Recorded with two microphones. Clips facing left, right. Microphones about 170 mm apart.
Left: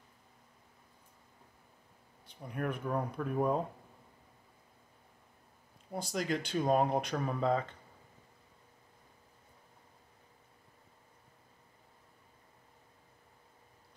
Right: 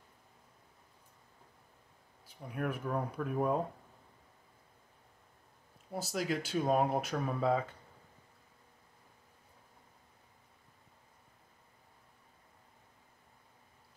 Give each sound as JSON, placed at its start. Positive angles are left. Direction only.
{"t": 2.2, "sound": "speech", "side_deg": -5}
{"t": 2.8, "sound": "speech", "side_deg": 10}
{"t": 3.3, "sound": "speech", "side_deg": -5}
{"t": 5.9, "sound": "speech", "side_deg": -5}